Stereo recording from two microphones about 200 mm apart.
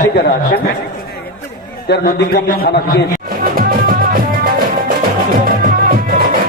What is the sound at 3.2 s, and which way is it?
Music, 50° right (ahead or behind).